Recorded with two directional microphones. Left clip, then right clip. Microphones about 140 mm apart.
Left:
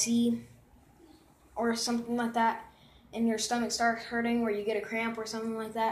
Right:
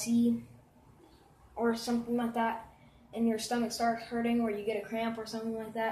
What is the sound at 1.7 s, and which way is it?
Speech, 20° left (ahead or behind).